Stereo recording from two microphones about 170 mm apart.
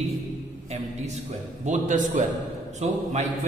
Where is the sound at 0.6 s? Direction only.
40° right (ahead or behind).